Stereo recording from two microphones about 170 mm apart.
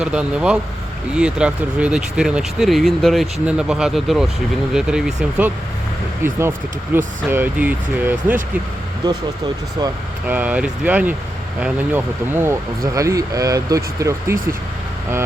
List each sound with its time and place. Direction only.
0.0 s speech: 5° right (ahead or behind)
10.2 s speech: 10° right (ahead or behind)